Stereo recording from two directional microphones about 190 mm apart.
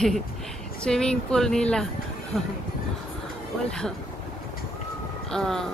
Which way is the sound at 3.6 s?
5° left (ahead or behind).